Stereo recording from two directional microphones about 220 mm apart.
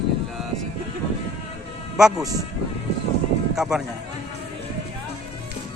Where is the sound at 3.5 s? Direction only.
Centre (ahead or behind).